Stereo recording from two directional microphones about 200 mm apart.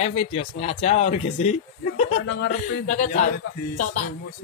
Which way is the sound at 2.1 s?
80° left.